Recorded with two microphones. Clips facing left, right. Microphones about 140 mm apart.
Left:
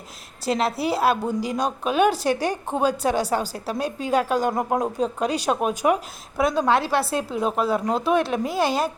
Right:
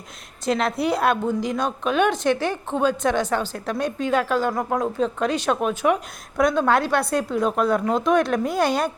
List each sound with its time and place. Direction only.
0.6 s a woman's voice: 5° left (ahead or behind); by 4.9 s 20° left (ahead or behind)
5.0 s a woman's voice: 10° left (ahead or behind)